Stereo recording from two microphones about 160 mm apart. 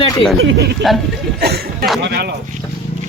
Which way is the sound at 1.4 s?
80° right.